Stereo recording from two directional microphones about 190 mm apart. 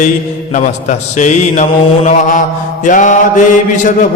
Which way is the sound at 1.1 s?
40° left (ahead or behind).